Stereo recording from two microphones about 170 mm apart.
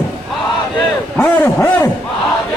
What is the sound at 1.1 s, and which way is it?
Speech, 10° left (ahead or behind).